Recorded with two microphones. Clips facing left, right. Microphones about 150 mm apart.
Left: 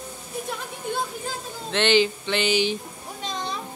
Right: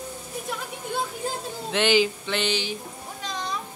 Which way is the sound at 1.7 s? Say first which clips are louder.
Left 1 dB; 5° right (ahead or behind).